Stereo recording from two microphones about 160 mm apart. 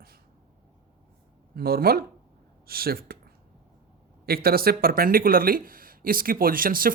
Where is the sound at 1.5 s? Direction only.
70° right (ahead or behind).